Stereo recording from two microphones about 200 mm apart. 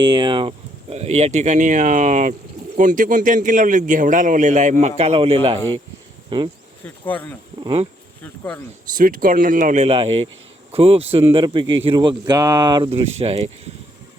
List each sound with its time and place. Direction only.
0.0 s a man's voice: 25° right (ahead or behind)
6.8 s speech: 10° left (ahead or behind)
7.6 s speech: 30° right (ahead or behind)
8.2 s speech: 10° left (ahead or behind)
9.0 s speech: 45° right (ahead or behind)